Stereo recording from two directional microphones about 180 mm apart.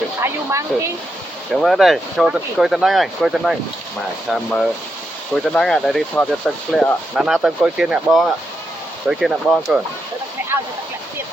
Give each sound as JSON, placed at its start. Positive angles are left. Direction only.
{"t": 0.2, "sound": "speech", "side_deg": -15}
{"t": 1.6, "sound": "speech", "side_deg": 0}